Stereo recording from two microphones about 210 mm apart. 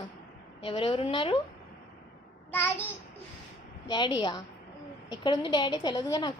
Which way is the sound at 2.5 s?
10° left (ahead or behind).